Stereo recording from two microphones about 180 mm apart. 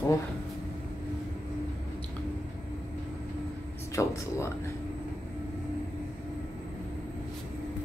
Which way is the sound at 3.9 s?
15° left (ahead or behind).